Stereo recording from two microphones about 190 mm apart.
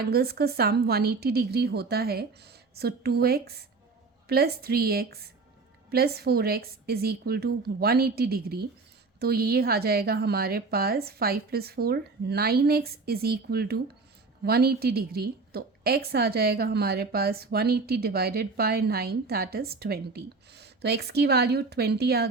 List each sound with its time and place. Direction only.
0.1 s a woman's voice: 55° right (ahead or behind)